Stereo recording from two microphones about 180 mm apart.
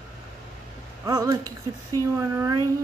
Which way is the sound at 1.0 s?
20° right (ahead or behind).